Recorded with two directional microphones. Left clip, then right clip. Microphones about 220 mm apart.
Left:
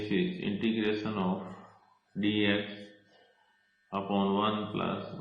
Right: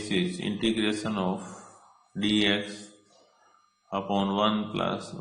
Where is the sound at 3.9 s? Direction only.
60° right (ahead or behind).